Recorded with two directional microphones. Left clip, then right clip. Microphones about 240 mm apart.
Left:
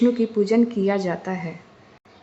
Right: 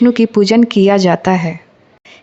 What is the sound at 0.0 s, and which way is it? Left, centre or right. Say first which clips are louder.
A woman's voice: right 9 dB; right.